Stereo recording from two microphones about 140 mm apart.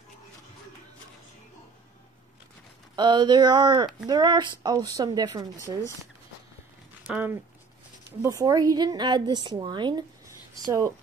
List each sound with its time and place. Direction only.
3.0 s speech: 30° right (ahead or behind)
7.1 s speech: 10° right (ahead or behind)
8.2 s speech: 25° right (ahead or behind)